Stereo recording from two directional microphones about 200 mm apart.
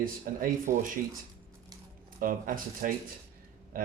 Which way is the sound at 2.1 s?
45° right (ahead or behind).